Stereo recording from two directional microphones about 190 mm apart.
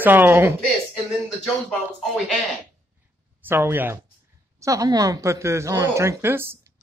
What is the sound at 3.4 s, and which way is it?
Speech, 10° right (ahead or behind).